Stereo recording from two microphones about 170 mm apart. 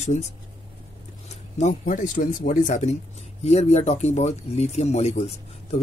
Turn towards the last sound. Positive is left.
turn(degrees=40)  # may be behind; listen again after turning